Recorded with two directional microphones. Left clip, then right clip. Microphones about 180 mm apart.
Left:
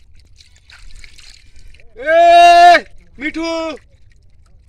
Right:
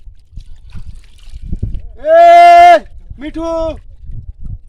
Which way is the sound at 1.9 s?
55° right (ahead or behind).